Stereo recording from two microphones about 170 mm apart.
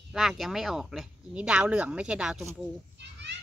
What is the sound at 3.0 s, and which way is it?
Children playing, 90° right.